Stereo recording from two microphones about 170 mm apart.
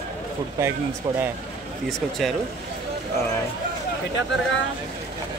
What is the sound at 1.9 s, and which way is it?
Speech, centre (ahead or behind).